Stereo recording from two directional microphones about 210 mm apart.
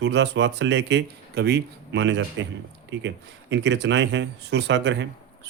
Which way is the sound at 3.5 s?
55° right (ahead or behind).